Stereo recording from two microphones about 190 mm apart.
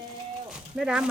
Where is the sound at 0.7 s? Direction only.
5° right (ahead or behind).